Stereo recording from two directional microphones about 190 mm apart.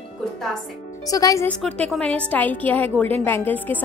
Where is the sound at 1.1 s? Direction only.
20° left (ahead or behind).